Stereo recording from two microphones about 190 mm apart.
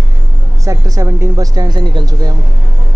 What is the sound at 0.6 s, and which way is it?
Speech, 15° right (ahead or behind).